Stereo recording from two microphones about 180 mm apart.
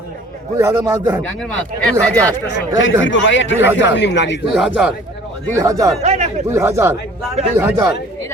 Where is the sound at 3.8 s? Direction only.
75° left (ahead or behind).